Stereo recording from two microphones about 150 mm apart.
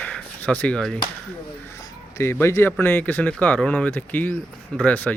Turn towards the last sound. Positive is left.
turn(degrees=10)  # may be behind; listen again after turning